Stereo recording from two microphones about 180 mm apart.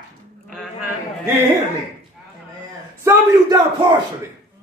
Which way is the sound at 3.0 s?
20° right (ahead or behind).